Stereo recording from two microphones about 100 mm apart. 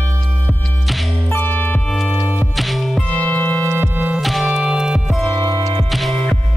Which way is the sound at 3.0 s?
15° left (ahead or behind).